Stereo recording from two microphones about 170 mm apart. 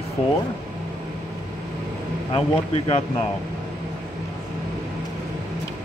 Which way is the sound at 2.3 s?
35° left (ahead or behind).